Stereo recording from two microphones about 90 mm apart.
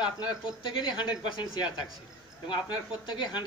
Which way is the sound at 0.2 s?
60° left (ahead or behind).